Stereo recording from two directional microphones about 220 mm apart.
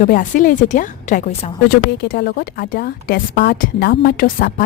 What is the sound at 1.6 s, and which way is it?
A woman's voice, 45° left (ahead or behind).